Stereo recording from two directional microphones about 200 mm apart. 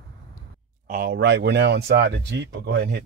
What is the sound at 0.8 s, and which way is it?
Speech, 50° right (ahead or behind).